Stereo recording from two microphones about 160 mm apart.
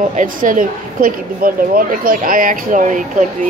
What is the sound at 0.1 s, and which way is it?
Speech, 55° right (ahead or behind).